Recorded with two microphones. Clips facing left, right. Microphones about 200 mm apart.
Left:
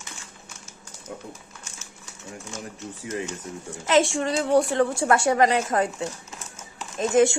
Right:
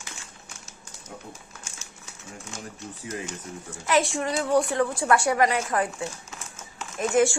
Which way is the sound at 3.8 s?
25° left (ahead or behind).